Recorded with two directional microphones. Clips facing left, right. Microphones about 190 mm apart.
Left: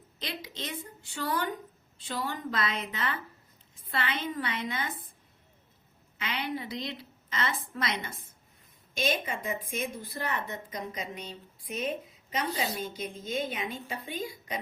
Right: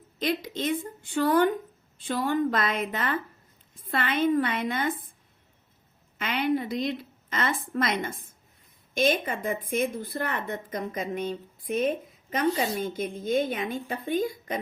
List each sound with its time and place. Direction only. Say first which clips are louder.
0.2 s a woman's voice: right 11 dB; 50° right (ahead or behind)
6.1 s a woman's voice: right 8 dB; 50° right (ahead or behind)